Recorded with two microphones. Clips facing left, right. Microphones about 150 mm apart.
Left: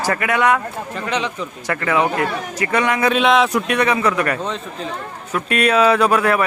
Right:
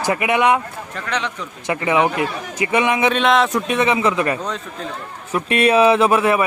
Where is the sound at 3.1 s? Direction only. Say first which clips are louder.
Left 1 dB; centre (ahead or behind).